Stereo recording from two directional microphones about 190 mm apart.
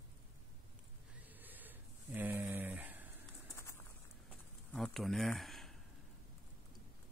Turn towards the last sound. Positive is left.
turn(degrees=0)  # may be behind; listen again after turning